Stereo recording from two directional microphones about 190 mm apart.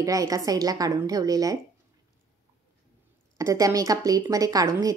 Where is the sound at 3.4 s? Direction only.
15° right (ahead or behind).